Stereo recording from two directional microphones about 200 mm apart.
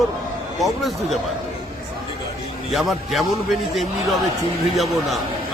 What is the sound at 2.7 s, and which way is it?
Speech, centre (ahead or behind).